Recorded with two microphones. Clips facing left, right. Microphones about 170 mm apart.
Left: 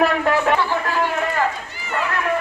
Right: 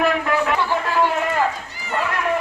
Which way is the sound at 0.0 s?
35° left (ahead or behind).